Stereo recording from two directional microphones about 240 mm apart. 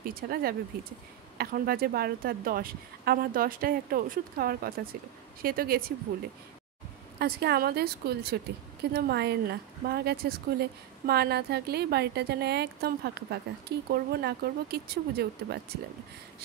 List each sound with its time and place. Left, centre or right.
0.0 s a woman's voice: right
7.2 s a woman's voice: right